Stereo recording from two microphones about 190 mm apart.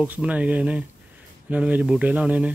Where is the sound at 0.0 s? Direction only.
5° right (ahead or behind).